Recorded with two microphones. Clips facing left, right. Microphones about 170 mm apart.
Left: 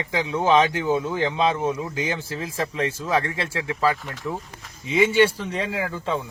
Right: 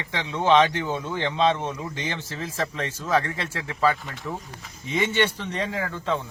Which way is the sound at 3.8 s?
Centre (ahead or behind).